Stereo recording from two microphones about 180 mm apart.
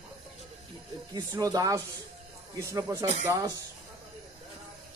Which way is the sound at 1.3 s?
20° right (ahead or behind).